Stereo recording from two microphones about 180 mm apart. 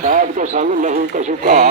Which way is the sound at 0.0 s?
50° right (ahead or behind).